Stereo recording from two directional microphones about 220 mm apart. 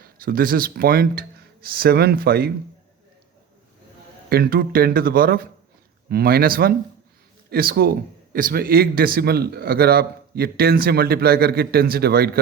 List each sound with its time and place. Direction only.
0.0 s speech: 45° right (ahead or behind)
4.3 s speech: 45° right (ahead or behind)